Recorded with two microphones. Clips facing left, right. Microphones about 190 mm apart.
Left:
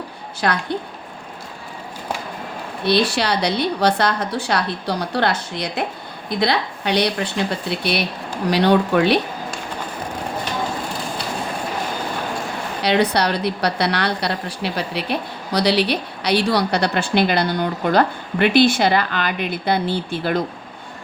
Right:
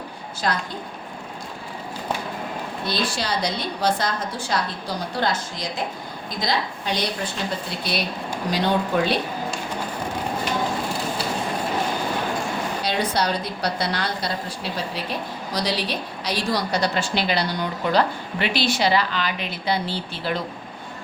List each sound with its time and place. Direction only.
0.4 s a woman's voice: 65° left (ahead or behind)
2.8 s a woman's voice: 70° left (ahead or behind)
12.8 s a woman's voice: 65° left (ahead or behind); by 20.4 s 50° left (ahead or behind)